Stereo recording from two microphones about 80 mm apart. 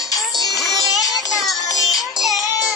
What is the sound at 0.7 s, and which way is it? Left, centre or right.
Music, left.